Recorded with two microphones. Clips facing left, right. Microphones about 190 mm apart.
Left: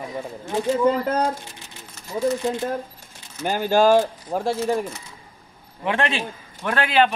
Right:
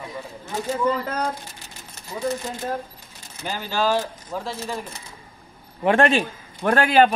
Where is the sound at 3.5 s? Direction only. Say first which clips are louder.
Left 7 dB; 50° left (ahead or behind).